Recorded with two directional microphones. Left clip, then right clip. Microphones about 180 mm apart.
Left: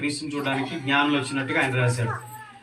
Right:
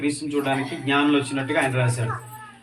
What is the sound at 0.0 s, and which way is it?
A man's voice, 15° left (ahead or behind).